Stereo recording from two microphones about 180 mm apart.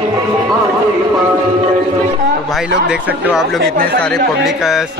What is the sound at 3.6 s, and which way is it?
Speech, 60° right (ahead or behind).